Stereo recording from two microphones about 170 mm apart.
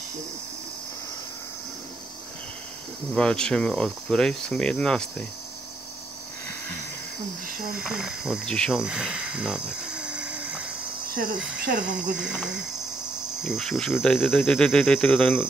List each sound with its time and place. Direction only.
3.2 s speech: 5° left (ahead or behind)
7.8 s speech: 5° right (ahead or behind)
11.6 s cricket: 50° right (ahead or behind)
12.2 s speech: 5° right (ahead or behind)